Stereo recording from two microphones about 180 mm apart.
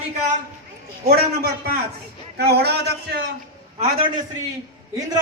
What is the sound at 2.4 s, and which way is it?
Speech, 65° right (ahead or behind).